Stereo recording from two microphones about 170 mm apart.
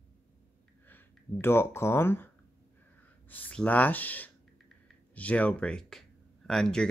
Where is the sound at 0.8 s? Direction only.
10° left (ahead or behind).